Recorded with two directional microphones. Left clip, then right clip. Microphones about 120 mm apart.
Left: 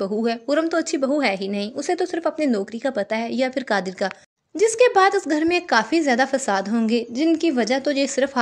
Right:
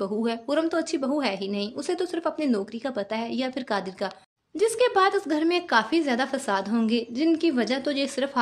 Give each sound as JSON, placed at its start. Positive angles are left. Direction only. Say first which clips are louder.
{"t": 0.0, "sound": "speech", "louder": "left 5 dB", "side_deg": 30}